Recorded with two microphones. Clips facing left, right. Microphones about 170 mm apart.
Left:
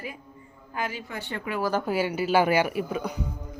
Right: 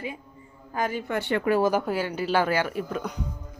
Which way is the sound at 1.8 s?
5° left (ahead or behind).